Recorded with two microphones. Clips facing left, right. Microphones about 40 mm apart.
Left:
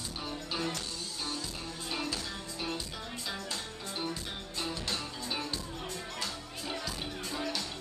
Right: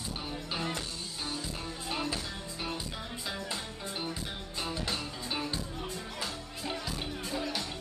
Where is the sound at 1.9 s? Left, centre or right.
Centre.